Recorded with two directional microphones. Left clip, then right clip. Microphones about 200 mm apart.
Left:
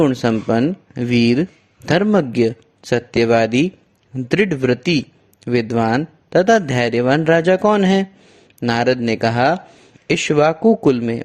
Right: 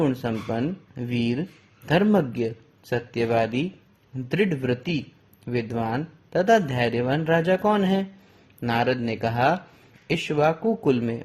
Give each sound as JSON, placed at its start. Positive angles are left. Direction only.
{"t": 0.0, "sound": "a man's voice", "side_deg": 45}